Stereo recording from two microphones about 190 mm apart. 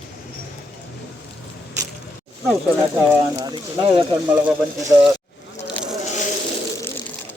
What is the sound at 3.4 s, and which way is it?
Speech, 25° right (ahead or behind).